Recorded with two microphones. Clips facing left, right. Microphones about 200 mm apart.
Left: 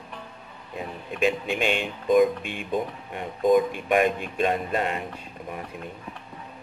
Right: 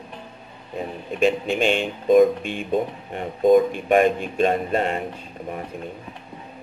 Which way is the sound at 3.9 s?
35° right (ahead or behind).